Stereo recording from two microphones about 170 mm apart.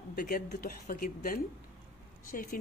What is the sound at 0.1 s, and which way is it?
A woman's voice, 60° left (ahead or behind).